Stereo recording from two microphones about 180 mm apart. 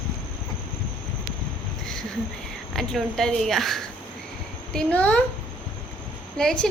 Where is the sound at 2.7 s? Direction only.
Centre (ahead or behind).